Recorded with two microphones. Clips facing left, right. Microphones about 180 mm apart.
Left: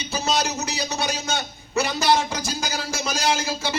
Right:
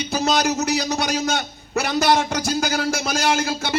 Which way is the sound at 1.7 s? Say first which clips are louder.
Right 2 dB; 55° right (ahead or behind).